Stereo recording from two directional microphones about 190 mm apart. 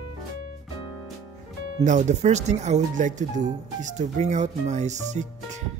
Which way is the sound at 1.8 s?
40° right (ahead or behind).